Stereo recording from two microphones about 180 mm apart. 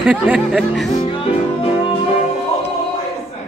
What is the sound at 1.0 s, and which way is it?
Music, 30° left (ahead or behind).